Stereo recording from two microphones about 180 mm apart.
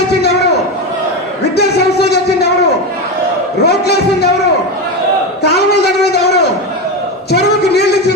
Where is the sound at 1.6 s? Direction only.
65° left (ahead or behind).